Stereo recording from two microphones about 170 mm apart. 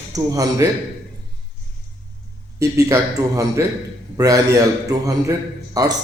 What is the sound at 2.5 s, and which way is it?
A man's voice, 20° right (ahead or behind).